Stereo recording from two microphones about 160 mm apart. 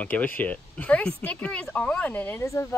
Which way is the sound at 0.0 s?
10° left (ahead or behind).